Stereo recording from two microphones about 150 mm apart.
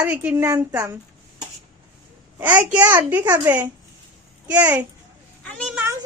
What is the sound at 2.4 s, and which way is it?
A woman's voice, 10° right (ahead or behind).